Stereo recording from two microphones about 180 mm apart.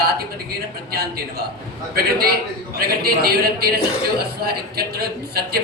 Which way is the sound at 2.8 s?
60° right (ahead or behind).